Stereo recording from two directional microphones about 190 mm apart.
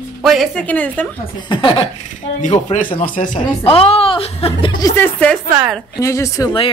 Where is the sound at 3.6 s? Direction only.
30° left (ahead or behind); by 5.4 s 10° left (ahead or behind).